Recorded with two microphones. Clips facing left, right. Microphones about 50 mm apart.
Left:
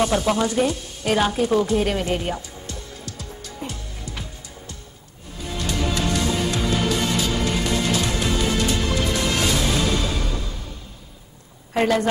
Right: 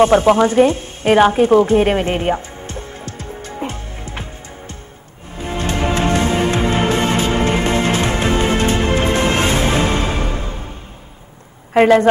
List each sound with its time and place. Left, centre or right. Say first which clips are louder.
0.0 s a sound: right 9 dB; right
5.3 s music: right 6 dB; right
11.7 s speech: right 9 dB; right